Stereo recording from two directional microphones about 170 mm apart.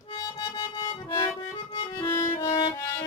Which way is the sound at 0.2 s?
25° left (ahead or behind).